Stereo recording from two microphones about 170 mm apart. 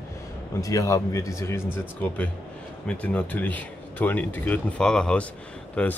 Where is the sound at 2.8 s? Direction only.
10° left (ahead or behind).